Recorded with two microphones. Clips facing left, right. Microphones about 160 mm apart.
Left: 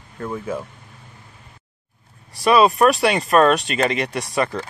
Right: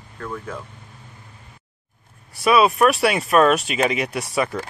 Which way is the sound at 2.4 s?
5° right (ahead or behind).